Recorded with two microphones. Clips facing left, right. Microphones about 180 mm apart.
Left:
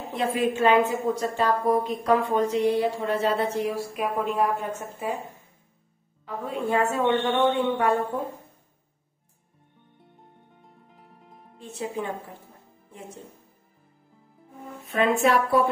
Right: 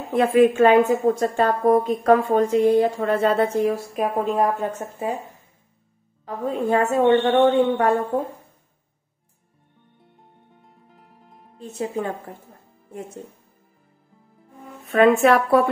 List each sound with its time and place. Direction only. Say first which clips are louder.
0.1 s a woman's voice: right 9 dB; 55° right (ahead or behind); by 4.8 s 40° right (ahead or behind)
6.2 s speech: right 5 dB; 40° right (ahead or behind)
10.6 s music: even; centre (ahead or behind)
11.5 s speech: right 5 dB; 45° right (ahead or behind)
14.9 s speech: right 6 dB; 60° right (ahead or behind)